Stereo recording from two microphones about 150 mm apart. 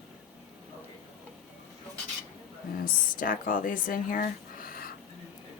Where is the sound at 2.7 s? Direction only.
70° left (ahead or behind).